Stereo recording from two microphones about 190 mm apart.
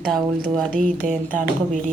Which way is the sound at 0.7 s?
45° right (ahead or behind).